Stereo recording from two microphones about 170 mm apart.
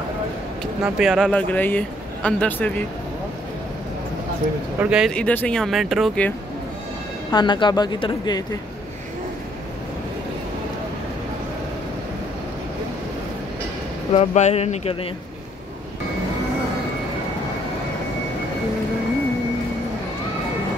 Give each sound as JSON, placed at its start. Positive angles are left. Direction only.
{"t": 0.8, "sound": "speech", "side_deg": -5}
{"t": 4.7, "sound": "speech", "side_deg": -5}
{"t": 5.1, "sound": "speech", "side_deg": 10}
{"t": 7.2, "sound": "speech", "side_deg": 25}
{"t": 14.1, "sound": "speech", "side_deg": 40}